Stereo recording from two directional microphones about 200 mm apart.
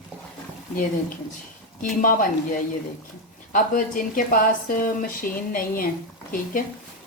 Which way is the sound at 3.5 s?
40° left (ahead or behind).